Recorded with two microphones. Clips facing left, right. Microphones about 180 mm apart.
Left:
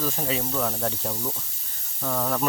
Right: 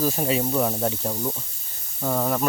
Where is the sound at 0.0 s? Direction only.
15° right (ahead or behind).